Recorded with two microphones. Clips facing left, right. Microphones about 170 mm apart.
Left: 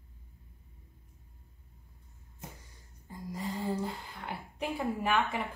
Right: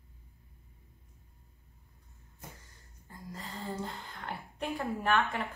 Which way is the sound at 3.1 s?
10° left (ahead or behind).